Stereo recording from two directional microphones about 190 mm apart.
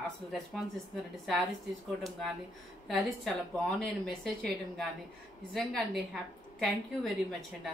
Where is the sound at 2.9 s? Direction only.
Centre (ahead or behind).